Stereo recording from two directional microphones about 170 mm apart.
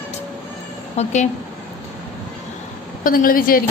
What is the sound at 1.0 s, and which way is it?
Speech, 40° left (ahead or behind).